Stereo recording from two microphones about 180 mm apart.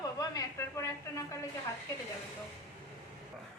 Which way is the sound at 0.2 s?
15° left (ahead or behind).